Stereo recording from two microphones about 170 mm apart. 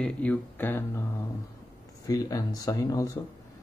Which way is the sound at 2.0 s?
20° left (ahead or behind).